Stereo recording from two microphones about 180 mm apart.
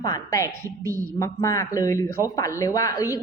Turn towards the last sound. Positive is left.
turn(degrees=20)  # may be behind; listen again after turning